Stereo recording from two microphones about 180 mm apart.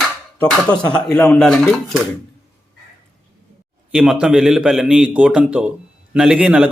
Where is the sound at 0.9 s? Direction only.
5° left (ahead or behind).